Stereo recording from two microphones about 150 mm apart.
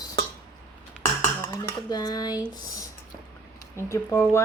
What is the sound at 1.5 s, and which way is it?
Speech, 25° left (ahead or behind).